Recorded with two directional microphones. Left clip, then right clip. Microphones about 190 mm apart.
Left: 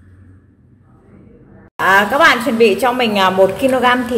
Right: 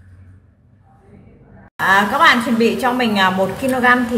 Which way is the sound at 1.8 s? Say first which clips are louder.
Left 2 dB; 35° left (ahead or behind).